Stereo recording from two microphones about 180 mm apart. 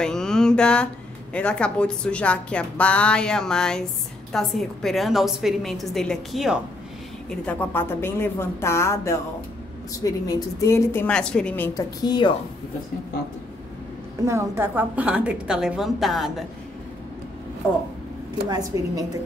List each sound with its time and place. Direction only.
0.0 s a sound: 5° left (ahead or behind)
1.3 s a woman's voice: 5° left (ahead or behind); by 12.4 s 25° left (ahead or behind)
14.2 s a woman's voice: 15° right (ahead or behind); by 16.4 s centre (ahead or behind)
18.5 s a woman's voice: 20° right (ahead or behind)